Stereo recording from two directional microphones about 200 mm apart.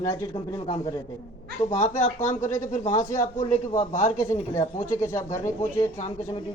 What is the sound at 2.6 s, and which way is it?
A man's voice, 35° left (ahead or behind).